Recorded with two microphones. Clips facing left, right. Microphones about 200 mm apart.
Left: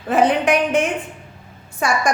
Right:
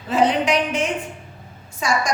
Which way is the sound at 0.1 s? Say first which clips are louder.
Left 2 dB; 55° left (ahead or behind).